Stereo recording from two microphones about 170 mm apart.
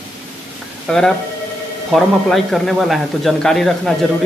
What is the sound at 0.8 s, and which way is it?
Speech, 5° left (ahead or behind).